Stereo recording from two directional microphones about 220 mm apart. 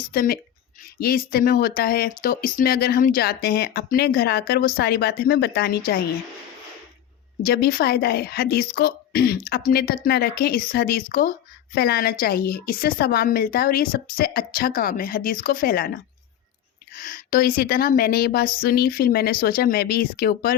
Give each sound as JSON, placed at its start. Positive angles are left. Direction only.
{"t": 0.1, "sound": "a woman's voice", "side_deg": 40}
{"t": 7.4, "sound": "a woman's voice", "side_deg": 45}
{"t": 16.9, "sound": "a woman's voice", "side_deg": 40}